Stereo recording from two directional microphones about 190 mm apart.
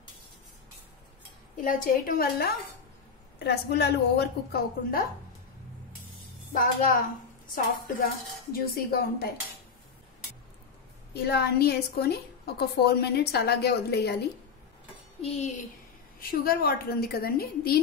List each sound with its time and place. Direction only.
1.6 s a woman's voice: 45° left (ahead or behind)
6.5 s speech: 45° left (ahead or behind)
11.1 s a woman's voice: 60° left (ahead or behind)
15.2 s speech: 35° left (ahead or behind)
16.2 s speech: 50° left (ahead or behind)